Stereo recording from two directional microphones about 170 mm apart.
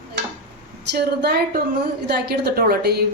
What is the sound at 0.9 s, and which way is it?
A woman's voice, 70° right (ahead or behind).